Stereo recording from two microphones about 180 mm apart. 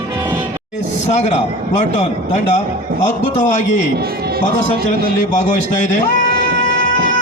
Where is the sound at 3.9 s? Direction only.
55° right (ahead or behind).